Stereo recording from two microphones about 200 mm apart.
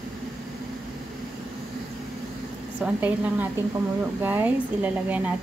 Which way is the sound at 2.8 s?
10° right (ahead or behind).